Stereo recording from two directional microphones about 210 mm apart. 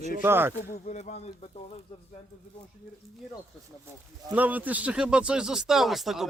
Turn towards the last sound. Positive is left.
turn(degrees=0)  # may be behind; listen again after turning